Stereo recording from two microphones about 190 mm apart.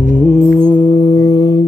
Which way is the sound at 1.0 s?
20° left (ahead or behind).